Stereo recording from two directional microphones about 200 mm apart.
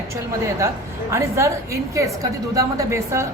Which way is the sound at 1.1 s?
15° right (ahead or behind).